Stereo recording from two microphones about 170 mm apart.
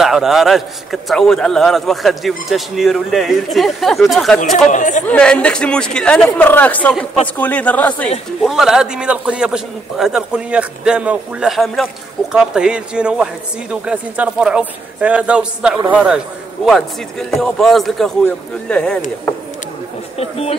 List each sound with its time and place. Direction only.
0.0 s a man's voice: centre (ahead or behind)
4.6 s speech: 45° left (ahead or behind)
5.0 s speech: 5° left (ahead or behind)
8.4 s a man's voice: centre (ahead or behind)
20.2 s speech: 35° left (ahead or behind)